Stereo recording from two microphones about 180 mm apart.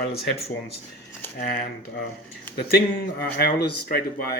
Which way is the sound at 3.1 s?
60° left (ahead or behind).